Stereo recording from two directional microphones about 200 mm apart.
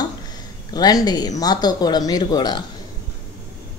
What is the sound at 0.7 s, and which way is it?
Speech, 20° left (ahead or behind).